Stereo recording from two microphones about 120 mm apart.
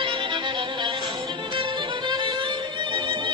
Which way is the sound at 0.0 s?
45° right (ahead or behind).